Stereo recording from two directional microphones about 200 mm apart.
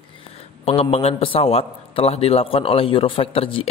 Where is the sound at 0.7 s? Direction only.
30° left (ahead or behind).